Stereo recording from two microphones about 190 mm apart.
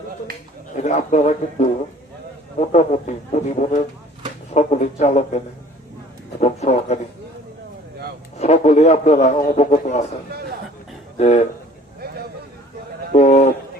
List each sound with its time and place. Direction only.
0.8 s a man's voice: 40° left (ahead or behind)
6.4 s a man's voice: 35° left (ahead or behind)
8.4 s a man's voice: 35° left (ahead or behind)
11.2 s a man's voice: 35° left (ahead or behind)
13.1 s a man's voice: 35° left (ahead or behind)